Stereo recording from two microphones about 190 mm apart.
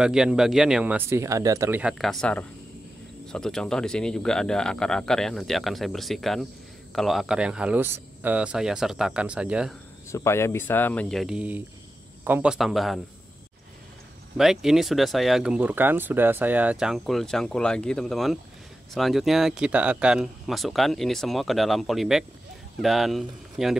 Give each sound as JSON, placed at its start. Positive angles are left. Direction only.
{"t": 0.0, "sound": "speech", "side_deg": -5}
{"t": 10.0, "sound": "speech", "side_deg": 15}
{"t": 14.3, "sound": "speech", "side_deg": 0}